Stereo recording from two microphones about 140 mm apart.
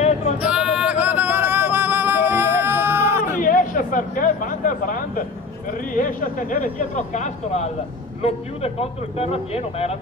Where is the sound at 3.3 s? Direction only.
70° left (ahead or behind).